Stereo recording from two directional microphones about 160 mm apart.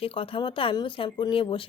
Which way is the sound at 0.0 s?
35° left (ahead or behind).